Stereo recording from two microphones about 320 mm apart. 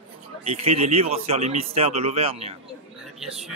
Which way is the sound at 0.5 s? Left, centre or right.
Centre.